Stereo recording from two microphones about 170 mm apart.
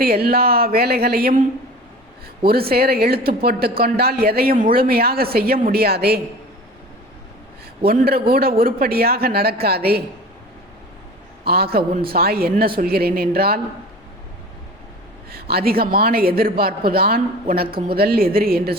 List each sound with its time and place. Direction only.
0.0 s speech: 65° right (ahead or behind)
2.5 s speech: 65° right (ahead or behind)
7.9 s speech: 60° right (ahead or behind)
11.4 s speech: 65° right (ahead or behind)
15.3 s speech: 65° right (ahead or behind)
17.7 s speech: 30° right (ahead or behind)
17.9 s speech: 65° right (ahead or behind)